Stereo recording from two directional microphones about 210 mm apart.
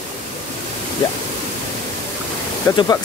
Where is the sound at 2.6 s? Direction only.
15° left (ahead or behind).